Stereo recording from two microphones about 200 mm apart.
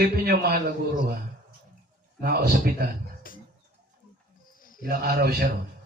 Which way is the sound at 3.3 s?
45° left (ahead or behind).